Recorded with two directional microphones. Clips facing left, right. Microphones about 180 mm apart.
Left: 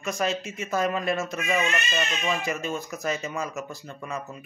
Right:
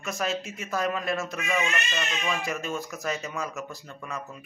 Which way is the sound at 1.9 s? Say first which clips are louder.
Left 3 dB; 15° left (ahead or behind).